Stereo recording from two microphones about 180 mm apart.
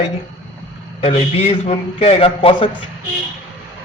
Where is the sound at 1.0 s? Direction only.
35° left (ahead or behind).